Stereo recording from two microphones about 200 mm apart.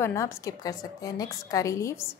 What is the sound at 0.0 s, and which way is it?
A woman's voice, 15° left (ahead or behind).